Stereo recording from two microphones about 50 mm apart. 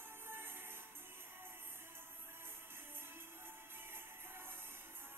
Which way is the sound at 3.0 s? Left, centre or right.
Right.